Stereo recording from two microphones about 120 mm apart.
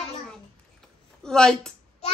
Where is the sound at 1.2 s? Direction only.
5° left (ahead or behind).